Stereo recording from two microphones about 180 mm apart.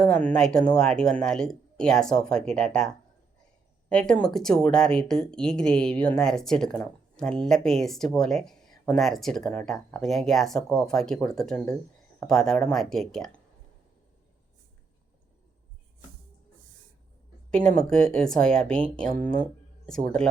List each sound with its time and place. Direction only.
0.0 s speech: 5° left (ahead or behind)
17.5 s speech: 5° left (ahead or behind)
19.1 s speech: 50° right (ahead or behind)
19.4 s speech: 5° left (ahead or behind)